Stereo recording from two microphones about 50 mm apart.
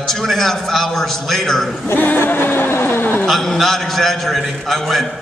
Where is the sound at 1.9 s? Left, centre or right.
Left.